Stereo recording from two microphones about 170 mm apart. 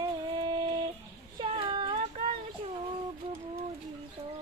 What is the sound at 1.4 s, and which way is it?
Child singing, 30° right (ahead or behind).